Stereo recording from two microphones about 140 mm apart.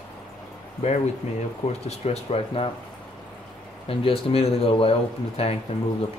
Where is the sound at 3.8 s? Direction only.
40° left (ahead or behind).